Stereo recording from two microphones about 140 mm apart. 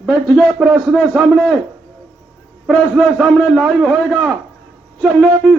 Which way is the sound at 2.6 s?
Centre (ahead or behind).